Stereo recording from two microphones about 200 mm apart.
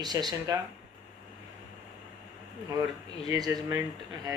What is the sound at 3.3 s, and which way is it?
Speech, 20° right (ahead or behind).